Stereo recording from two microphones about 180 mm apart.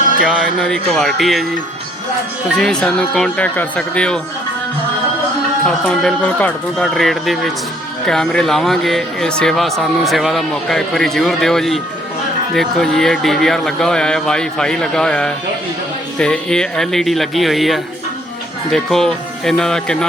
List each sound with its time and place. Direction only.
0.0 s music: 50° right (ahead or behind)
0.3 s speech: 5° left (ahead or behind)
2.6 s speech: 5° left (ahead or behind)
5.6 s speech: 5° left (ahead or behind)